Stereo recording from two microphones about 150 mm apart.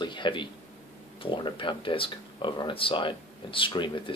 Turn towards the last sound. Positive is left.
turn(degrees=35)  # may be behind; listen again after turning